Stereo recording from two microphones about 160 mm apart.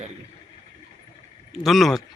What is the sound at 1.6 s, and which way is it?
Speech, centre (ahead or behind).